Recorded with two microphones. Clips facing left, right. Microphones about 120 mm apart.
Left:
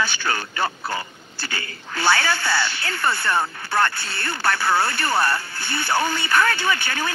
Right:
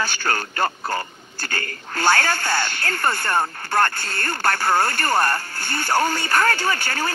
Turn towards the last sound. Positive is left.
turn(degrees=-40)  # may be behind; listen again after turning